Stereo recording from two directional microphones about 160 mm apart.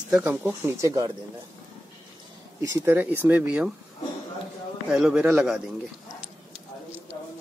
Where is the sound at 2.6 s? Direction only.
20° right (ahead or behind).